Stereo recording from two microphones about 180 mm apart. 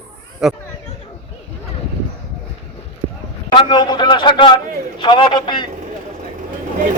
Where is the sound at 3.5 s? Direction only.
25° left (ahead or behind).